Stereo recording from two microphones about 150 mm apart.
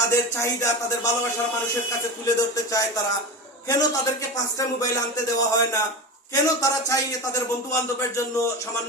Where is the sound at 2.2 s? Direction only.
20° left (ahead or behind).